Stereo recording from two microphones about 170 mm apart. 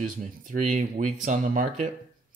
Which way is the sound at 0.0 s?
50° right (ahead or behind).